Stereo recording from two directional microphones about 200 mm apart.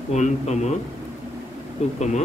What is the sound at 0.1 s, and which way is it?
Speech, 35° left (ahead or behind).